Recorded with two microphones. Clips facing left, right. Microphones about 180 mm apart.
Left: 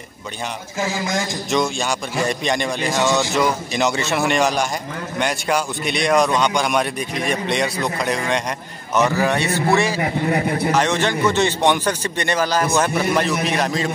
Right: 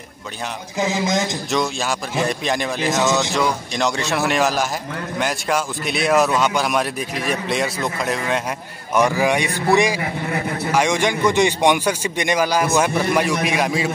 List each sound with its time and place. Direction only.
0.7 s a man's voice: 20° right (ahead or behind)
1.5 s a man's voice: centre (ahead or behind)
8.9 s speech: 10° right (ahead or behind)